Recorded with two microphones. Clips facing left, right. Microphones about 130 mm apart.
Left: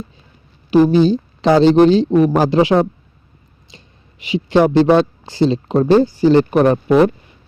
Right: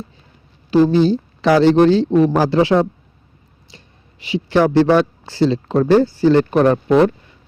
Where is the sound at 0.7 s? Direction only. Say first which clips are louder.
Left 2 dB; 15° left (ahead or behind).